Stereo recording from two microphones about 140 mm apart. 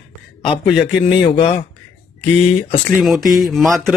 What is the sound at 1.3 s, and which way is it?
Speech, 40° left (ahead or behind).